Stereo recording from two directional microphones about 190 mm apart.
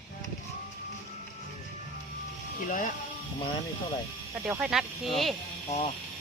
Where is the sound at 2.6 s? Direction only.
40° left (ahead or behind).